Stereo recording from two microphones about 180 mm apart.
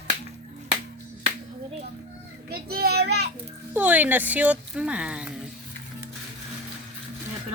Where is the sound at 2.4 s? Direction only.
55° right (ahead or behind).